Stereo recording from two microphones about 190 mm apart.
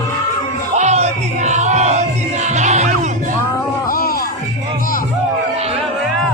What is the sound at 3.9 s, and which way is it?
Music, 50° left (ahead or behind).